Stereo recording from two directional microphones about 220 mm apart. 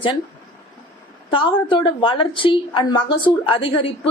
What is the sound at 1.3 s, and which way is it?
A woman's voice, 25° left (ahead or behind).